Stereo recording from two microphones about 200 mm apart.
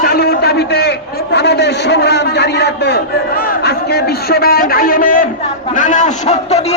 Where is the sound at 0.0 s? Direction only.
50° left (ahead or behind).